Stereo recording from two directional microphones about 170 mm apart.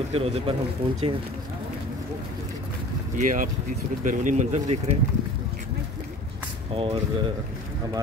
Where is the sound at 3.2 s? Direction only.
50° right (ahead or behind).